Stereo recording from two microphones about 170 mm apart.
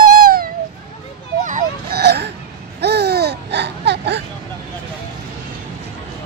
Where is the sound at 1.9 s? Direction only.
70° right (ahead or behind).